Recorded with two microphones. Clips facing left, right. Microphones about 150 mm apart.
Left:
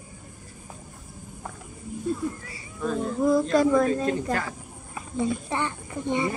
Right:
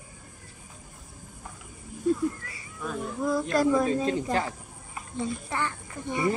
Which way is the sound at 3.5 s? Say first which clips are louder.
Even; centre (ahead or behind).